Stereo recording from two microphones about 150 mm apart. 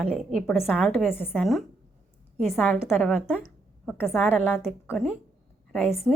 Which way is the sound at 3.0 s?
5° left (ahead or behind).